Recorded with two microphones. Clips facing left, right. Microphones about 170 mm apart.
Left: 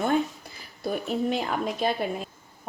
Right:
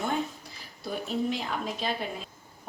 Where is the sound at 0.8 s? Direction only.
55° left (ahead or behind).